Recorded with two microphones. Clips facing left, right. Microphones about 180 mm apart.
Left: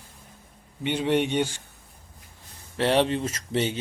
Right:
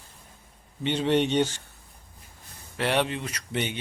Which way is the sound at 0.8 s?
10° left (ahead or behind).